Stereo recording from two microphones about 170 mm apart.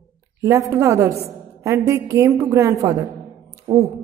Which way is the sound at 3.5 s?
20° right (ahead or behind).